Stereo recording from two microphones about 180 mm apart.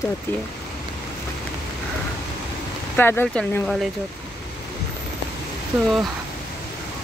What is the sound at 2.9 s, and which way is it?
Speech, 10° left (ahead or behind).